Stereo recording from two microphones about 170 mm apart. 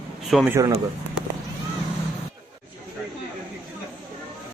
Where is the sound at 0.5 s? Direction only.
20° right (ahead or behind).